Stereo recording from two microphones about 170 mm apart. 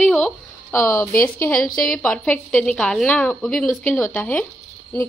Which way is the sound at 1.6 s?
55° left (ahead or behind).